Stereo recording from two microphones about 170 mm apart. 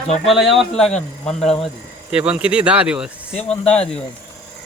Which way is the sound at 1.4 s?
Centre (ahead or behind).